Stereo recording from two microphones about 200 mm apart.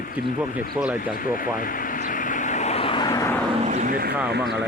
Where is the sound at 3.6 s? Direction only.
40° right (ahead or behind).